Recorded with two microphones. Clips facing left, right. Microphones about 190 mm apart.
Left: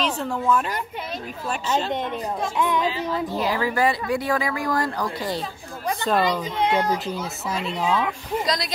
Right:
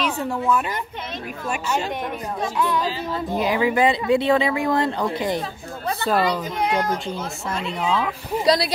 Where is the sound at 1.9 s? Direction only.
25° left (ahead or behind).